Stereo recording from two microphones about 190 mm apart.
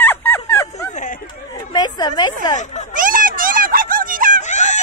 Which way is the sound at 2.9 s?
45° right (ahead or behind).